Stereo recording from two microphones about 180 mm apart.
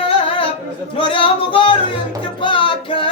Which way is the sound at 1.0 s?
30° left (ahead or behind).